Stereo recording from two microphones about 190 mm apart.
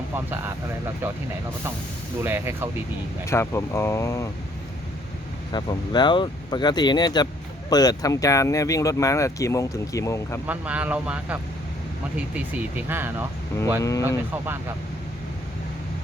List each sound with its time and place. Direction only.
1.0 s speech: 10° right (ahead or behind)
2.2 s speech: 10° right (ahead or behind)
3.2 s speech: 15° left (ahead or behind)
5.5 s speech: 25° left (ahead or behind)
10.4 s speech: 10° right (ahead or behind)
13.8 s speech: 15° left (ahead or behind)